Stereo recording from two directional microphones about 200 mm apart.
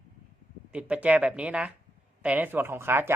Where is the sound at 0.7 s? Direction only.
5° right (ahead or behind).